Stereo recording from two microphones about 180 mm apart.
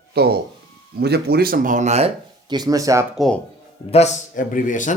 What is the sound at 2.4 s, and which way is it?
Speech, 20° right (ahead or behind).